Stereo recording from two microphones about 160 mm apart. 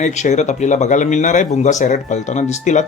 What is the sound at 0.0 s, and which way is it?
A man's voice, 45° left (ahead or behind).